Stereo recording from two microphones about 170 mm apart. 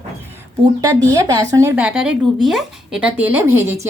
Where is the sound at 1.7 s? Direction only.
5° right (ahead or behind).